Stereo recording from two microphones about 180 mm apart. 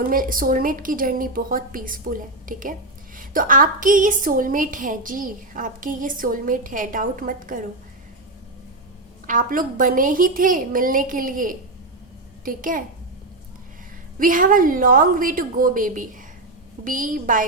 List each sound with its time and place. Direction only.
0.0 s a woman's voice: 50° right (ahead or behind)
9.2 s a woman's voice: 50° right (ahead or behind)
14.2 s a woman's voice: 50° right (ahead or behind)